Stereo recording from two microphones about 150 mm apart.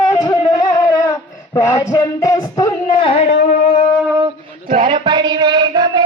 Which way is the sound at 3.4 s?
55° left (ahead or behind).